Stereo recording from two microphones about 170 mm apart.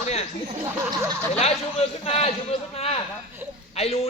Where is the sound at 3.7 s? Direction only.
35° left (ahead or behind).